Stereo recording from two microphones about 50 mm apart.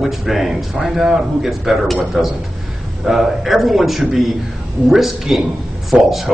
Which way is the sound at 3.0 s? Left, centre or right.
Centre.